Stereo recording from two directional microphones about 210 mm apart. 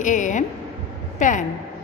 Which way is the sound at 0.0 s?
35° left (ahead or behind).